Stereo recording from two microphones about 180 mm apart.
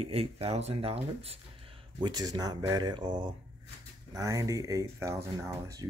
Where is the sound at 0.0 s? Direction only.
35° right (ahead or behind).